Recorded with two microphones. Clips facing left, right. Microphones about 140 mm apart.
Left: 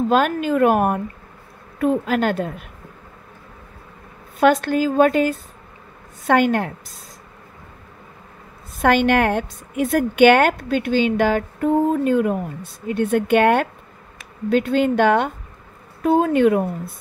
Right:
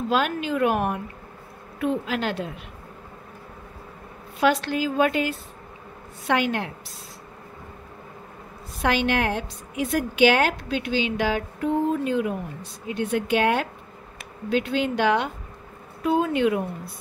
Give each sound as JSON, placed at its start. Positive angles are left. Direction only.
{"t": 0.1, "sound": "a woman's voice", "side_deg": 45}
{"t": 4.4, "sound": "a woman's voice", "side_deg": 50}
{"t": 8.8, "sound": "a woman's voice", "side_deg": 55}